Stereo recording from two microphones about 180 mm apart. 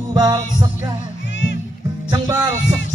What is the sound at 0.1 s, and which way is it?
Music, 20° right (ahead or behind).